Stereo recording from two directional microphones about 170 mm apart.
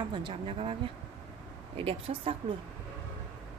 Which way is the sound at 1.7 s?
35° right (ahead or behind).